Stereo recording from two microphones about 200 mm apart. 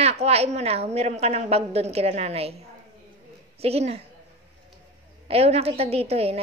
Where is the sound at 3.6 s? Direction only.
30° right (ahead or behind).